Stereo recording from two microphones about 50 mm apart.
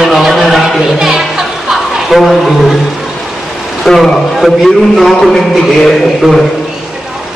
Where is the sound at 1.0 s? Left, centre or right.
Centre.